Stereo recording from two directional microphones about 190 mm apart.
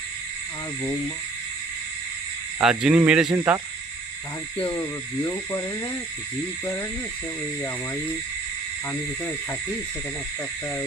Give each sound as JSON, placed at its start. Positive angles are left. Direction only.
{"t": 2.6, "sound": "speech", "side_deg": -5}
{"t": 4.6, "sound": "speech", "side_deg": 20}
{"t": 8.9, "sound": "speech", "side_deg": 15}